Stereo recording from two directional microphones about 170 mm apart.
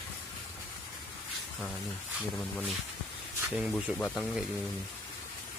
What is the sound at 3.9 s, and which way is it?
Speech, 5° left (ahead or behind).